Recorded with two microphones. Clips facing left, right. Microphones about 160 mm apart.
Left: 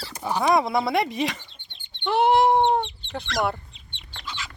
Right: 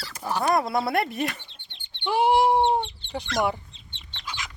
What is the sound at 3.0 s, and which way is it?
Speech, 15° right (ahead or behind).